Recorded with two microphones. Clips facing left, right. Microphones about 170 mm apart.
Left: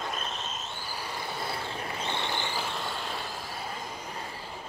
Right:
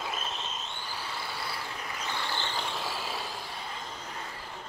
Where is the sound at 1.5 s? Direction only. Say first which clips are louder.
Left 4 dB; 25° left (ahead or behind); by 3.3 s centre (ahead or behind).